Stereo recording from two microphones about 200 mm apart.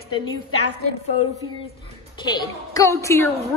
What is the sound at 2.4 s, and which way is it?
Speech, 15° left (ahead or behind).